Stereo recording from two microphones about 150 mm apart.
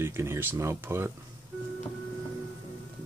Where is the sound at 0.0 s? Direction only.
15° right (ahead or behind).